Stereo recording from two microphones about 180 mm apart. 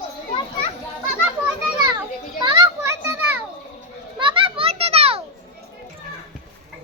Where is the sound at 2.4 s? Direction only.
25° right (ahead or behind).